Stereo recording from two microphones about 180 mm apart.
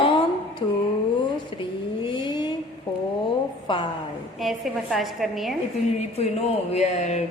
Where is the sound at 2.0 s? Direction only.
30° left (ahead or behind).